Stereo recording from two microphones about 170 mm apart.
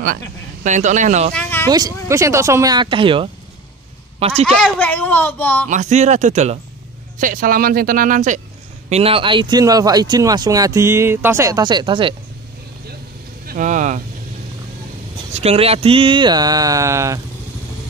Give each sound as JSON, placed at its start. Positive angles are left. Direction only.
{"t": 0.7, "sound": "speech", "side_deg": -45}
{"t": 1.3, "sound": "speech", "side_deg": 10}
{"t": 1.7, "sound": "a man's voice", "side_deg": -20}
{"t": 4.6, "sound": "a child's voice", "side_deg": 5}
{"t": 5.7, "sound": "speech", "side_deg": -45}
{"t": 7.2, "sound": "speech", "side_deg": -55}
{"t": 8.8, "sound": "speech", "side_deg": -35}
{"t": 13.5, "sound": "speech", "side_deg": -50}
{"t": 15.3, "sound": "speech", "side_deg": -35}